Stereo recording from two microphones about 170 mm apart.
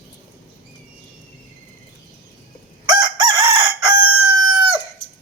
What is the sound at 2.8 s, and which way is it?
Chicken, 25° right (ahead or behind).